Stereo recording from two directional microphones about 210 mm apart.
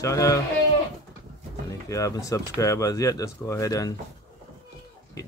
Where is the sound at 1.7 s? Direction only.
15° left (ahead or behind).